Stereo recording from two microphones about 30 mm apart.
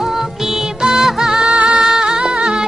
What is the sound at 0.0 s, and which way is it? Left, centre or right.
Music, centre.